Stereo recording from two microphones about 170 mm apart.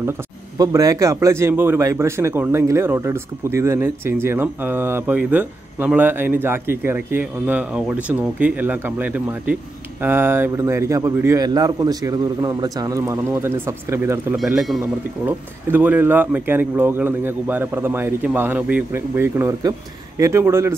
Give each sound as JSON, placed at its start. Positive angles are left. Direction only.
{"t": 0.6, "sound": "a man's voice", "side_deg": -20}
{"t": 14.3, "sound": "a man's voice", "side_deg": 0}